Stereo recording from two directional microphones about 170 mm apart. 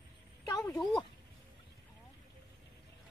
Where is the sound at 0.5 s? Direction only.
20° left (ahead or behind).